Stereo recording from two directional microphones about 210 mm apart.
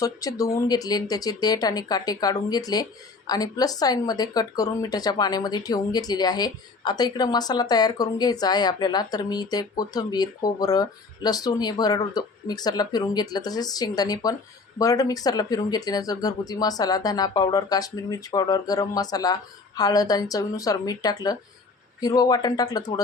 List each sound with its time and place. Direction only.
0.0 s speech: 15° left (ahead or behind)